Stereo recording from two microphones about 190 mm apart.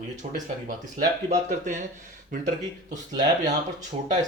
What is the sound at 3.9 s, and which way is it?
Speech, 35° right (ahead or behind).